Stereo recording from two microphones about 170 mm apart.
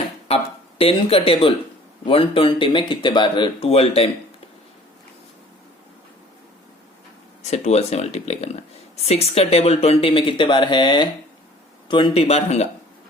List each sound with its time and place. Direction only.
0.8 s speech: 35° left (ahead or behind)
7.5 s speech: 40° left (ahead or behind)